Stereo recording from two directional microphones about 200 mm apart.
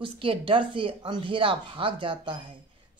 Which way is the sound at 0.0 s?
25° right (ahead or behind).